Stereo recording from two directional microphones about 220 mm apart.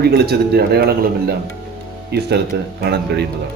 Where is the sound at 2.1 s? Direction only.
45° right (ahead or behind).